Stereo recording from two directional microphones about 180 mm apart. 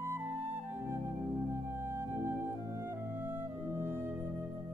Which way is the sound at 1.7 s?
15° right (ahead or behind).